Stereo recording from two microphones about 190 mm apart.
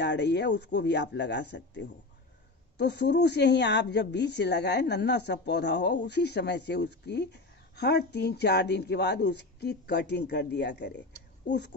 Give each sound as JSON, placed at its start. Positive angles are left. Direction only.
{"t": 0.0, "sound": "a woman's voice", "side_deg": 65}